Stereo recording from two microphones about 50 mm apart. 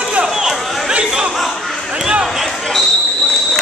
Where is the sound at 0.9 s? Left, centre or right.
Right.